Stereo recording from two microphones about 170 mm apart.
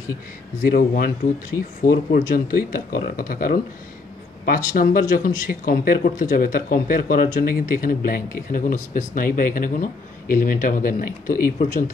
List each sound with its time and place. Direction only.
0.7 s speech: 60° left (ahead or behind)